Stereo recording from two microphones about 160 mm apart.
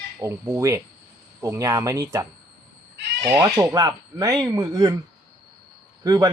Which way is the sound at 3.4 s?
25° right (ahead or behind).